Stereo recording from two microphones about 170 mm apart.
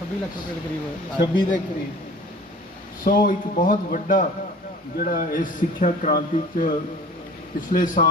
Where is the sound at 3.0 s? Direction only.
55° left (ahead or behind).